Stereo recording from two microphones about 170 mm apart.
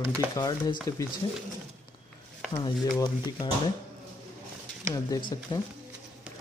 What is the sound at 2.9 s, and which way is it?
Speech, 25° left (ahead or behind).